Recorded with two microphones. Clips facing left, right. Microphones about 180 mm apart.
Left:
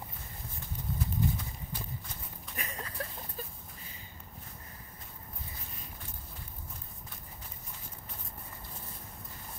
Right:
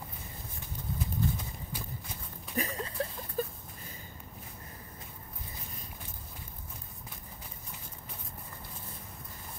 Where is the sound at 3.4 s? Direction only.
50° right (ahead or behind).